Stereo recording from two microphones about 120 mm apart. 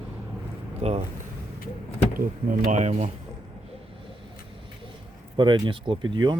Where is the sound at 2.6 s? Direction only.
80° right.